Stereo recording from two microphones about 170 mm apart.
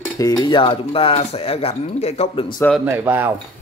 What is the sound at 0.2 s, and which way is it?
Speech, 25° left (ahead or behind).